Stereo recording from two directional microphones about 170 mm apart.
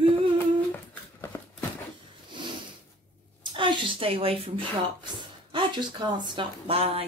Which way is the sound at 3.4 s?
30° right (ahead or behind).